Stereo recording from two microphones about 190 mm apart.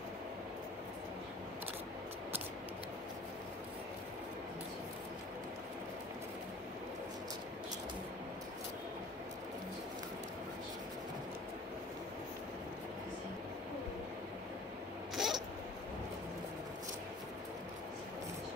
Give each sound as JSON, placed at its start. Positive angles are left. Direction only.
{"t": 15.1, "sound": "cat", "side_deg": 0}